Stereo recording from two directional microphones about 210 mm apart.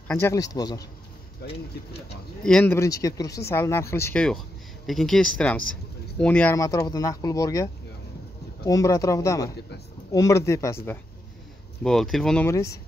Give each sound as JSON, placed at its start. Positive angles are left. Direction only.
{"t": 0.1, "sound": "speech", "side_deg": 15}
{"t": 1.4, "sound": "speech", "side_deg": 50}
{"t": 2.4, "sound": "speech", "side_deg": 5}
{"t": 11.8, "sound": "speech", "side_deg": 0}
{"t": 12.4, "sound": "speech", "side_deg": 15}